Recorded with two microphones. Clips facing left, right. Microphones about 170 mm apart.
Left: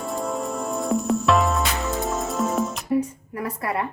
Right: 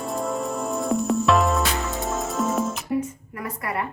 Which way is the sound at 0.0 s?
Centre (ahead or behind).